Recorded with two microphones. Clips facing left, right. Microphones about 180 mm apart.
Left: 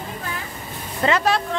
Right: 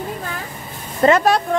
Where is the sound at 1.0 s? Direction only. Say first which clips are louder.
Right 6 dB; 45° right (ahead or behind).